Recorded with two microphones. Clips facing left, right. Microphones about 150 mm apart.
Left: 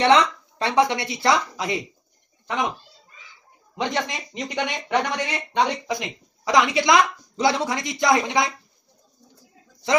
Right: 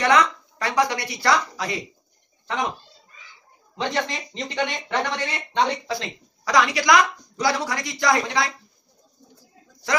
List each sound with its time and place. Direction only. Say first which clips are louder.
0.0 s speech: left 2 dB; 25° left (ahead or behind)
3.7 s speech: even; 15° left (ahead or behind)
9.8 s speech: left 4 dB; 25° left (ahead or behind)